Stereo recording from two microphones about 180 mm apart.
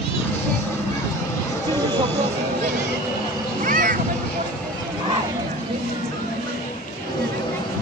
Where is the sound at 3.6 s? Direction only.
50° right (ahead or behind).